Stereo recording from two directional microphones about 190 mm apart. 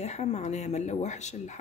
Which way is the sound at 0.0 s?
35° left (ahead or behind).